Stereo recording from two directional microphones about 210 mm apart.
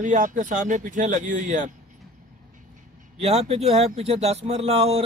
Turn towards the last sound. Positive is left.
turn(degrees=-30)  # may be behind; listen again after turning